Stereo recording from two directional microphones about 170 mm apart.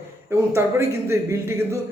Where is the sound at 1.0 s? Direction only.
15° right (ahead or behind).